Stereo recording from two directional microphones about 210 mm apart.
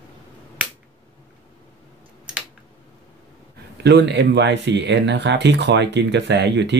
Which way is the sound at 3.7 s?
55° right (ahead or behind).